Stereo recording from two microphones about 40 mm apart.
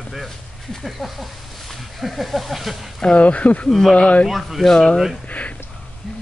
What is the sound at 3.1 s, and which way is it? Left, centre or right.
Speech, left.